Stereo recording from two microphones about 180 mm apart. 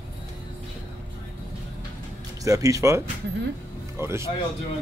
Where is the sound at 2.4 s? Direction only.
20° right (ahead or behind).